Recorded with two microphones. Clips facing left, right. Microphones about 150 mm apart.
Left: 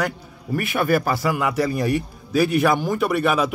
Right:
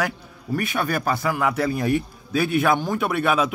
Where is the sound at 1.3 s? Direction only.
5° left (ahead or behind).